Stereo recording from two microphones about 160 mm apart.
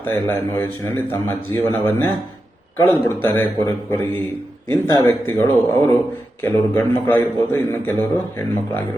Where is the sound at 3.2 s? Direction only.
15° left (ahead or behind).